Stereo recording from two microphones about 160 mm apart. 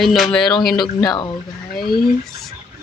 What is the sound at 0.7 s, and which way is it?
Speech, 25° left (ahead or behind).